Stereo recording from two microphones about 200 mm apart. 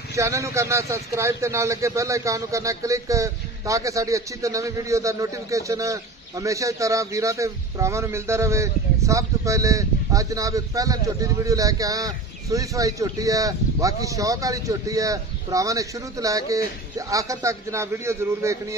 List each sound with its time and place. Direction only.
0.1 s a man's voice: 15° right (ahead or behind)